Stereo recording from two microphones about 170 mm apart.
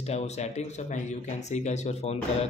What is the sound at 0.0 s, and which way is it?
A man's voice, 40° left (ahead or behind).